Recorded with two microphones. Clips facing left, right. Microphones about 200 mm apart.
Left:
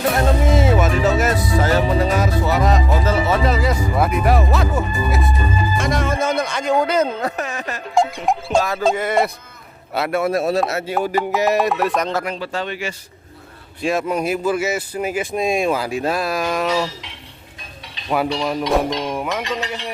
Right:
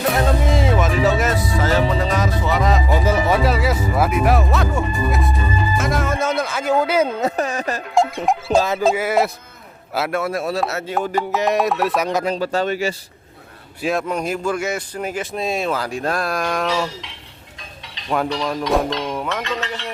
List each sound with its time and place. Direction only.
0.1 s music: centre (ahead or behind)
2.0 s speech: 5° left (ahead or behind)
3.0 s speech: 15° right (ahead or behind)
7.2 s speech: 30° right (ahead or behind)
7.9 s music: centre (ahead or behind)
8.8 s speech: 5° right (ahead or behind)
10.2 s speech: 25° left (ahead or behind)
10.7 s speech: 10° left (ahead or behind)
12.2 s speech: 40° right (ahead or behind)
13.8 s speech: 5° left (ahead or behind)
18.1 s speech: 10° left (ahead or behind)